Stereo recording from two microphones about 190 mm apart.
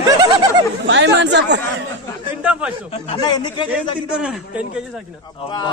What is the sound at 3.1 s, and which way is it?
Speech, 20° left (ahead or behind).